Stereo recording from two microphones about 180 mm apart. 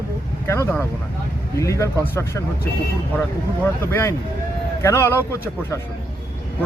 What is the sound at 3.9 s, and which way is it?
Speech, 15° left (ahead or behind).